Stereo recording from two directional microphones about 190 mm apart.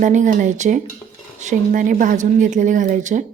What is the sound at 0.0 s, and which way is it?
A woman's voice, 40° right (ahead or behind).